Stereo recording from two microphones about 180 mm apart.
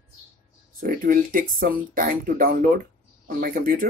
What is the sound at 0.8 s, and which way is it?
Speech, 50° right (ahead or behind).